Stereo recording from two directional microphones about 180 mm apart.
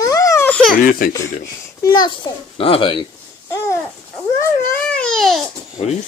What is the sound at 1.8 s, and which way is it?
Speech, 20° left (ahead or behind).